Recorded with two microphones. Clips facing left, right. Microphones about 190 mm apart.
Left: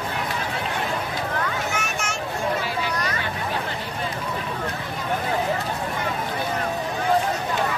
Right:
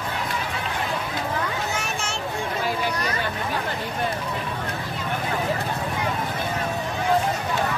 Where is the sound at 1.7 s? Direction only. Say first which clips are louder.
Left 1 dB; 30° right (ahead or behind).